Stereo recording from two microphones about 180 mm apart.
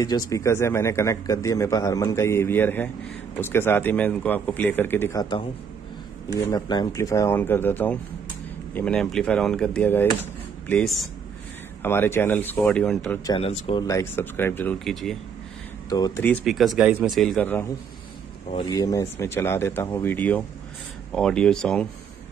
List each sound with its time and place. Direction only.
0.0 s a man's voice: 20° left (ahead or behind)
6.5 s a man's voice: 20° left (ahead or behind); by 13.2 s 5° left (ahead or behind)
13.3 s speech: 35° left (ahead or behind)
13.8 s a man's voice: 15° left (ahead or behind)
15.9 s speech: 20° left (ahead or behind)
16.3 s speech: centre (ahead or behind)
18.5 s a man's voice: 25° left (ahead or behind); by 21.8 s 5° left (ahead or behind)